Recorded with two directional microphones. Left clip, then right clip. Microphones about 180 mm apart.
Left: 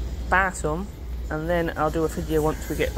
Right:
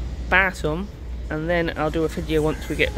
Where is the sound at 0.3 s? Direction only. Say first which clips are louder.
Right 3 dB; 30° right (ahead or behind).